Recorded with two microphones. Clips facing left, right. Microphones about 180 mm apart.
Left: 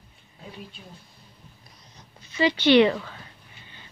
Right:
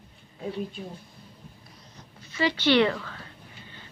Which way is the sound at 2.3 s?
20° left (ahead or behind).